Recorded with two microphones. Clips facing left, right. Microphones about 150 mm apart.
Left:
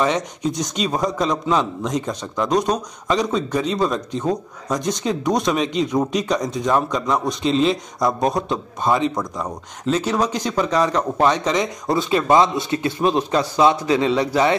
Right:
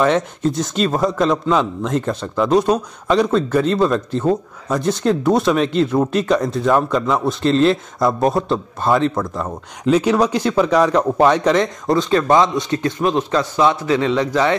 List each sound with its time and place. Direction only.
0.0 s a man's voice: centre (ahead or behind)